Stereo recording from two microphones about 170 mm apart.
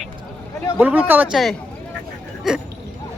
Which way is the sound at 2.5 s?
5° right (ahead or behind).